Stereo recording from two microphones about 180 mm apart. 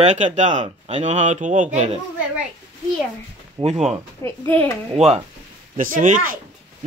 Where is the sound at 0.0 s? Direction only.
40° right (ahead or behind).